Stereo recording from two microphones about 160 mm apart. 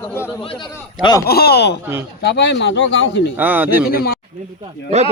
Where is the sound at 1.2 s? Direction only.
75° left (ahead or behind).